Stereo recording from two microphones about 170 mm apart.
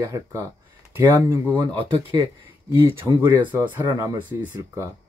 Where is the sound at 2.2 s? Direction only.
15° right (ahead or behind).